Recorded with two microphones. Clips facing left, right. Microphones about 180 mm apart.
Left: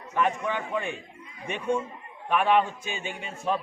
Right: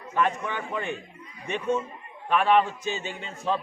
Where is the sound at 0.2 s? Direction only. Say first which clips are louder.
Even; 15° left (ahead or behind).